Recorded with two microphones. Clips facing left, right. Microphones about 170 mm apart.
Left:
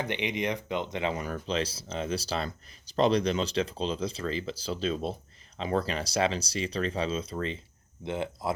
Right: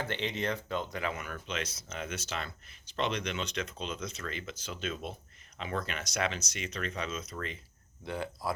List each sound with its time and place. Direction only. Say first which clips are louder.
0.0 s speech: left 3 dB; 15° left (ahead or behind)